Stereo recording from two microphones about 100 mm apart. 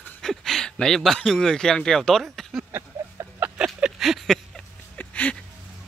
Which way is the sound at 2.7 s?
25° right (ahead or behind).